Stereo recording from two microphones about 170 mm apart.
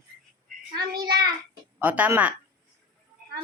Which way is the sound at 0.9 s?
65° right (ahead or behind).